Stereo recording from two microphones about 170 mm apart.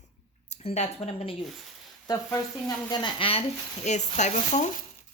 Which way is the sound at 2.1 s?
20° left (ahead or behind).